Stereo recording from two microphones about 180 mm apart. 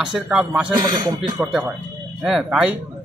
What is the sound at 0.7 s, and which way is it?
Speech, 25° right (ahead or behind).